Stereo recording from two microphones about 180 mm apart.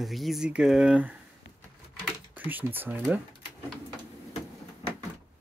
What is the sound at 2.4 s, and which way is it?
Speech, 10° right (ahead or behind).